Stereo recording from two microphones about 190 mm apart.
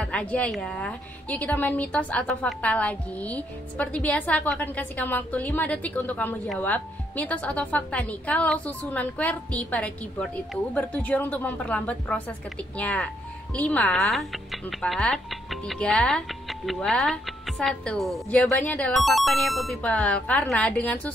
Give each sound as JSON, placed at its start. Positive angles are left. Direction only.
{"t": 0.0, "sound": "a woman's voice", "side_deg": 5}